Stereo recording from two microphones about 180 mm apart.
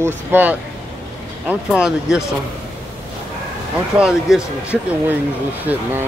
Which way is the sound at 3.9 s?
5° right (ahead or behind).